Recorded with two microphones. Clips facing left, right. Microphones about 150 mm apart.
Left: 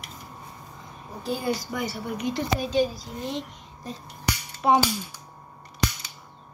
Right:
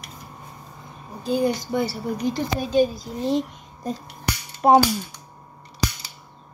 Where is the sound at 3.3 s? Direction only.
45° right (ahead or behind).